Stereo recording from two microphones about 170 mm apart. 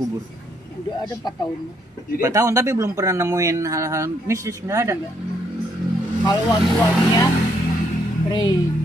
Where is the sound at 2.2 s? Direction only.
20° right (ahead or behind).